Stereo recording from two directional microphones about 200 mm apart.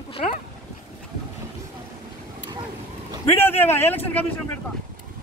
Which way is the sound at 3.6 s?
10° left (ahead or behind).